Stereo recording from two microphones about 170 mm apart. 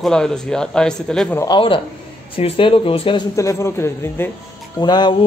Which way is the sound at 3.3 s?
15° left (ahead or behind).